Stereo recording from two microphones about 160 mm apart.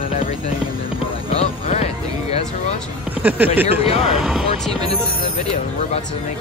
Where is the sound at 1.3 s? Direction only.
40° left (ahead or behind).